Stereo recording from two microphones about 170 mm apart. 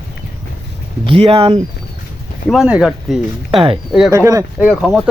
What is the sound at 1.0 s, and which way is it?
Speech, 35° right (ahead or behind).